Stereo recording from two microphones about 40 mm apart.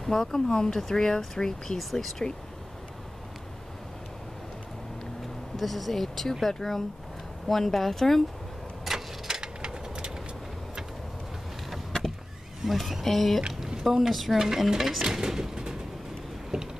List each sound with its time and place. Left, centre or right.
0.0 s speech: centre
1.8 s speech: centre
5.6 s speech: centre
8.8 s vehicle: centre
12.6 s speech: centre
13.7 s speech: centre
16.5 s a sound: centre